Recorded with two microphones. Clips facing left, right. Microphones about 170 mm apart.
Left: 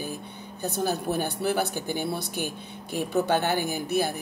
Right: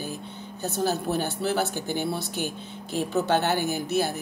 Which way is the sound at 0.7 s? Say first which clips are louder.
Right 1 dB; 55° left (ahead or behind).